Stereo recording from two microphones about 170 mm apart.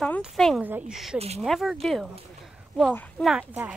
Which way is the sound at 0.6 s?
10° right (ahead or behind).